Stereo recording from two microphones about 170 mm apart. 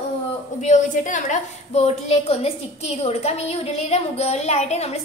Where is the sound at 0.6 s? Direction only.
45° left (ahead or behind).